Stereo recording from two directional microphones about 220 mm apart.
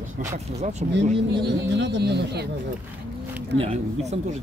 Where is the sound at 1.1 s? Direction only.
50° right (ahead or behind).